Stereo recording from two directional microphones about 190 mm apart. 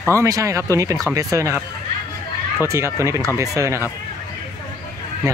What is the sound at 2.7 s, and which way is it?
Speech, 15° right (ahead or behind).